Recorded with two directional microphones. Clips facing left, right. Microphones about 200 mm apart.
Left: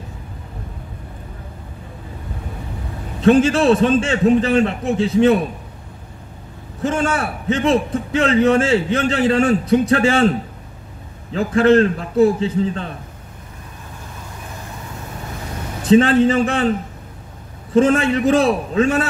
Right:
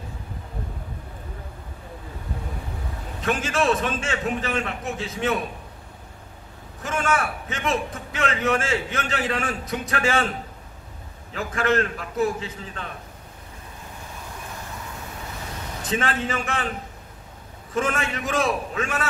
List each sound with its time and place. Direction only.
3.2 s a man's voice: 30° left (ahead or behind)
6.8 s a man's voice: 30° left (ahead or behind)
11.3 s a man's voice: 30° left (ahead or behind)
15.9 s a man's voice: 30° left (ahead or behind)
17.7 s a man's voice: 30° left (ahead or behind)